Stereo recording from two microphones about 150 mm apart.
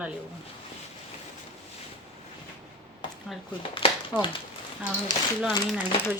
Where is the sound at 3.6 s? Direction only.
40° left (ahead or behind).